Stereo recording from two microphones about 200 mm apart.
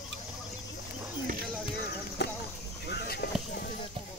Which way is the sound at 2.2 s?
55° left (ahead or behind).